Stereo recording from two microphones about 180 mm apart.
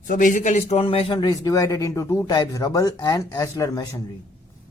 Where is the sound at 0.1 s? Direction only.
45° left (ahead or behind); by 4.0 s 20° left (ahead or behind).